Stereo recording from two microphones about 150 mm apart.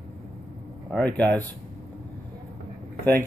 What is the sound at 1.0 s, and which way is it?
Speech, 10° left (ahead or behind).